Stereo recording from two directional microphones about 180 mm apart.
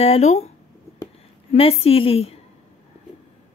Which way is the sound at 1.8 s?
30° left (ahead or behind).